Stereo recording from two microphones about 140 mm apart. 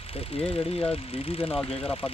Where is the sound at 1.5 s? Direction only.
10° left (ahead or behind).